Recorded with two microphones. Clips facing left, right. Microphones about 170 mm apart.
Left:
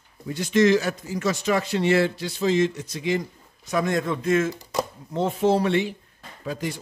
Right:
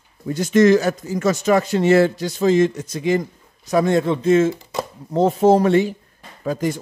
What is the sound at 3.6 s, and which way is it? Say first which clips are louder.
Speech: right 7 dB; 35° right (ahead or behind).